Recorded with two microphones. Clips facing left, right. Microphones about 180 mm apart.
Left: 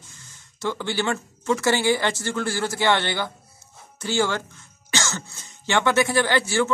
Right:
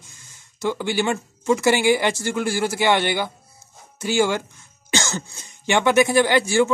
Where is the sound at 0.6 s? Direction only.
10° right (ahead or behind).